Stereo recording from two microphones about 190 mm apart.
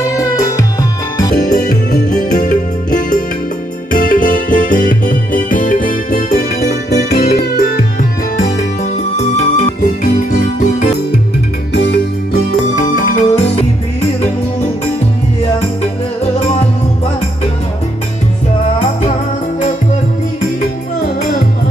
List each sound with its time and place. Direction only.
0.0 s music: 20° left (ahead or behind)
1.3 s music: 50° left (ahead or behind)
8.4 s music: 35° left (ahead or behind)
11.7 s music: 65° left (ahead or behind)
12.7 s music: 45° left (ahead or behind)